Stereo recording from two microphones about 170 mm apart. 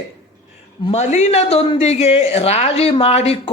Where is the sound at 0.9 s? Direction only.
40° left (ahead or behind).